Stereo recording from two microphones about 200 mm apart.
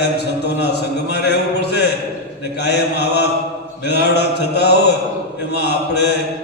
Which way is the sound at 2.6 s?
55° left (ahead or behind).